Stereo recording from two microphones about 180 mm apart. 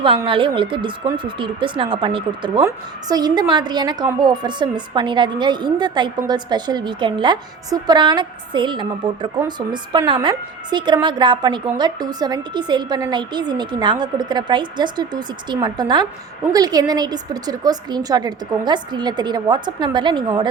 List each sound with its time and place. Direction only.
0.0 s a woman's voice: 30° right (ahead or behind)